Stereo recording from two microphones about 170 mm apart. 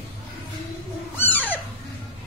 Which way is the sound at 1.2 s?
10° left (ahead or behind).